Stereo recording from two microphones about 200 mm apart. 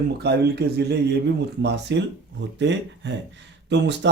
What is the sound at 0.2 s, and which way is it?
Speech, 55° right (ahead or behind).